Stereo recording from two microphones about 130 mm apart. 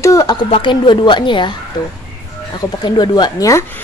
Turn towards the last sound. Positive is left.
turn(degrees=25)  # may be behind; listen again after turning